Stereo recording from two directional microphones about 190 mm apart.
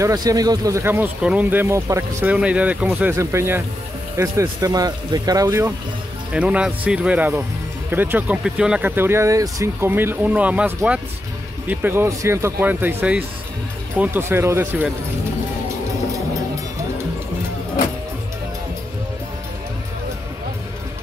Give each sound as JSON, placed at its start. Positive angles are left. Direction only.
{"t": 0.0, "sound": "speech", "side_deg": -20}
{"t": 6.3, "sound": "speech", "side_deg": -5}